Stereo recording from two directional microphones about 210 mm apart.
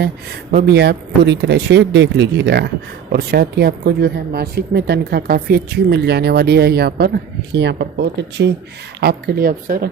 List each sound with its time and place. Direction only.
0.6 s speech: 50° right (ahead or behind)